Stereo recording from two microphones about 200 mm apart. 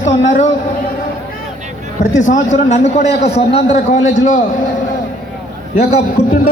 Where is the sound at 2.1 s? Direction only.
40° left (ahead or behind).